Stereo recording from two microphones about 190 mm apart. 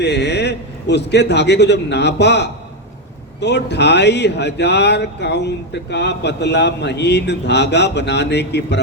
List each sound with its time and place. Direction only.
0.0 s a man's voice: 65° left (ahead or behind)